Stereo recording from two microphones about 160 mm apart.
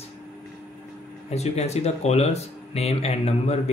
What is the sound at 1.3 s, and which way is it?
Speech, 40° left (ahead or behind).